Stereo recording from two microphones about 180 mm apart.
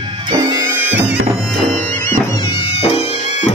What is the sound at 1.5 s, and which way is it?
Music, 5° left (ahead or behind).